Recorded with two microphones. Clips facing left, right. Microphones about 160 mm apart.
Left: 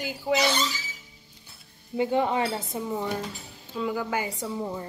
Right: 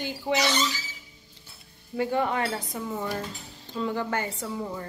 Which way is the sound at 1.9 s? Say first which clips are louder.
Left 2 dB; 20° left (ahead or behind).